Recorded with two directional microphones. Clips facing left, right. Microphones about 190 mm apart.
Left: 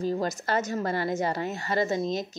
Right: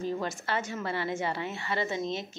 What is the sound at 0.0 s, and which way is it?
A woman's voice, 40° left (ahead or behind).